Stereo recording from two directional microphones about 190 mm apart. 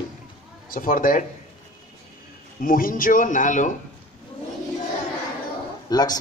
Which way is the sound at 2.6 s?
50° left (ahead or behind).